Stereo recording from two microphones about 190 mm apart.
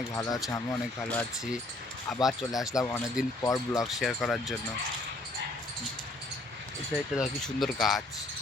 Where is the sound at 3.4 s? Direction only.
20° left (ahead or behind).